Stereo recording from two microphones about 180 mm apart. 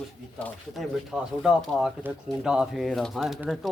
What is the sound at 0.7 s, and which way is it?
Speech, centre (ahead or behind).